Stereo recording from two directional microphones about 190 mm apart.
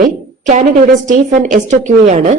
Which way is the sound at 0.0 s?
40° right (ahead or behind).